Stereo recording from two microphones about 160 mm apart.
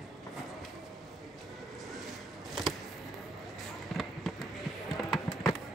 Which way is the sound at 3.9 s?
Centre (ahead or behind).